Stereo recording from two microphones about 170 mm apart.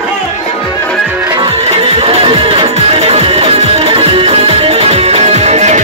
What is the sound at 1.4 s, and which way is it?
Music, 35° right (ahead or behind).